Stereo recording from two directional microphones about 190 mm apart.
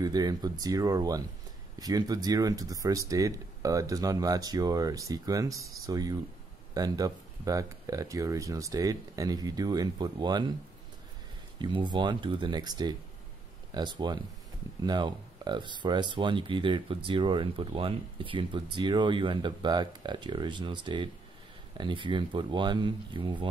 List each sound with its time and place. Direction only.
0.0 s speech: 20° right (ahead or behind)
11.5 s speech: 25° right (ahead or behind)